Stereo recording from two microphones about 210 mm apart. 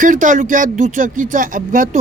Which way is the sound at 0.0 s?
40° right (ahead or behind).